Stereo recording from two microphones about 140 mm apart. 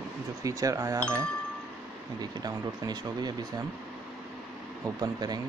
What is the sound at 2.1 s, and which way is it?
Speech, 30° right (ahead or behind).